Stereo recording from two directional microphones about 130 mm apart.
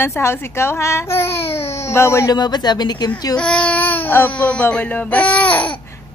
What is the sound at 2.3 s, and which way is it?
Speech, 30° left (ahead or behind).